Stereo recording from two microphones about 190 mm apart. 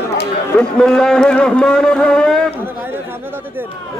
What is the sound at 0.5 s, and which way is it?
A man's voice, 5° left (ahead or behind).